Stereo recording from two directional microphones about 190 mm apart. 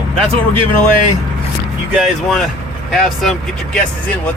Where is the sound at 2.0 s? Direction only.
Centre (ahead or behind).